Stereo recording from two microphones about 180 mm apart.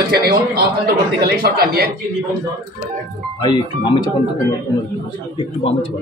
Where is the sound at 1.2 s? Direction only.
60° right (ahead or behind).